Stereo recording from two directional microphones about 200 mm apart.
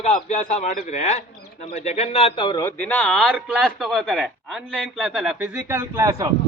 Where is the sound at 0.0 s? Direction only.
35° left (ahead or behind).